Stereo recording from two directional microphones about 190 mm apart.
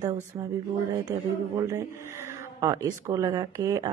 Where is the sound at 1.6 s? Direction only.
15° right (ahead or behind).